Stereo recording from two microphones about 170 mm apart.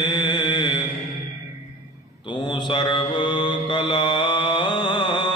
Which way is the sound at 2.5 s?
25° left (ahead or behind).